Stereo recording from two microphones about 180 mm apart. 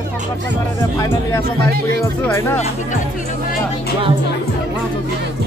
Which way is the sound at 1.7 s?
60° right (ahead or behind).